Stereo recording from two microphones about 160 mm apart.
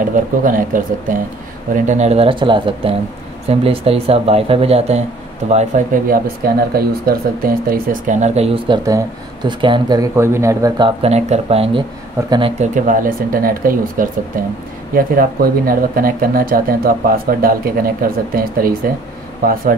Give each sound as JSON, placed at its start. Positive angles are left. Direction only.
{"t": 0.1, "sound": "speech", "side_deg": -55}
{"t": 1.9, "sound": "speech", "side_deg": -45}
{"t": 5.7, "sound": "speech", "side_deg": -50}
{"t": 6.0, "sound": "speech", "side_deg": -65}
{"t": 8.6, "sound": "speech", "side_deg": -25}
{"t": 10.8, "sound": "speech", "side_deg": -40}
{"t": 12.7, "sound": "speech", "side_deg": -55}